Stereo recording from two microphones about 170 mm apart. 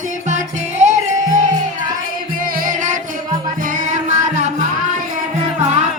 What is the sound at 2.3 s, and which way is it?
Music, 55° right (ahead or behind).